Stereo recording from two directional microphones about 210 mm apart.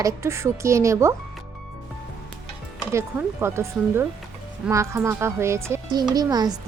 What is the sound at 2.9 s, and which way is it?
Speech, 10° right (ahead or behind).